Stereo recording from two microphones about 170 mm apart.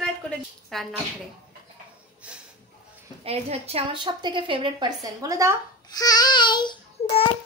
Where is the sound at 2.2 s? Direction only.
5° right (ahead or behind).